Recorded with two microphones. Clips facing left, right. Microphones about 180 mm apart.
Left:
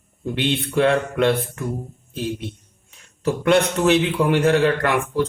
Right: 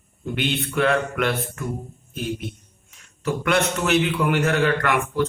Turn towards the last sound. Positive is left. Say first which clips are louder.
# left 2 dB
turn(degrees=30)  # may be behind; listen again after turning